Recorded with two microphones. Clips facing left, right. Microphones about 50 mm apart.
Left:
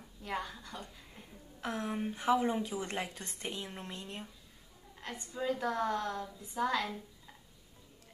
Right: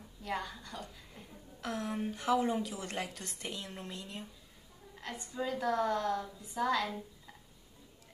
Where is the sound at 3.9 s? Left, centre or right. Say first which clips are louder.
Even; left.